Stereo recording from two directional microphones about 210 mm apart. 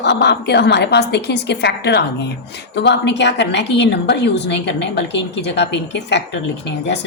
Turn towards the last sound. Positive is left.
turn(degrees=55)  # may be behind; listen again after turning